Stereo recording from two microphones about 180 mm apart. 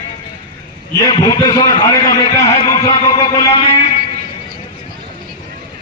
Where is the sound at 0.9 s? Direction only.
20° left (ahead or behind).